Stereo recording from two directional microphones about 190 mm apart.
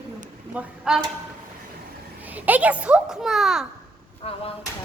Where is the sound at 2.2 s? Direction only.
10° right (ahead or behind).